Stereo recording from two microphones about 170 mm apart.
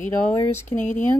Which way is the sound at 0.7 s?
50° left (ahead or behind).